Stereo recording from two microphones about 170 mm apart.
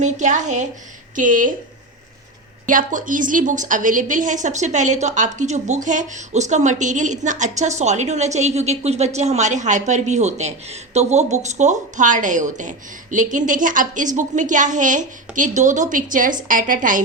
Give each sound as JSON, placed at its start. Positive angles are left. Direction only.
{"t": 0.0, "sound": "a woman's voice", "side_deg": -45}
{"t": 2.6, "sound": "a woman's voice", "side_deg": -50}